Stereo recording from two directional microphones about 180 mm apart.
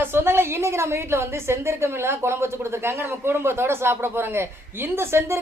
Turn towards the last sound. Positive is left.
turn(degrees=-15)  # may be behind; listen again after turning